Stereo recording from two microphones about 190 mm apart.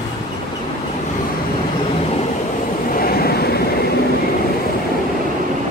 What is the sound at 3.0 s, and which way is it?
Vehicle, 55° left (ahead or behind).